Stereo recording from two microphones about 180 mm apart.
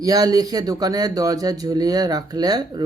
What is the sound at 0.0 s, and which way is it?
A man's voice, 20° right (ahead or behind).